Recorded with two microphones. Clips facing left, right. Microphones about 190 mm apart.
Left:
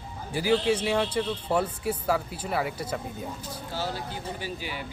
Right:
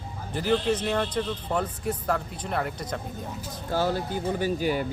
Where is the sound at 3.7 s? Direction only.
50° right (ahead or behind).